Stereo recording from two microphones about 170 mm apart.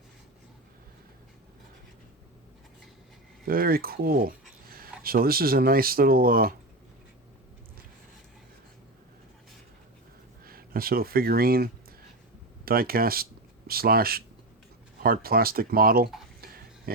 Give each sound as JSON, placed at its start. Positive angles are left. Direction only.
{"t": 3.4, "sound": "speech", "side_deg": -60}
{"t": 10.4, "sound": "speech", "side_deg": -60}